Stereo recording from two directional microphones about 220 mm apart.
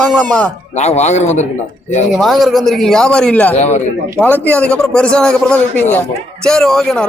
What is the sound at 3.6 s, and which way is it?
Speech, 30° left (ahead or behind).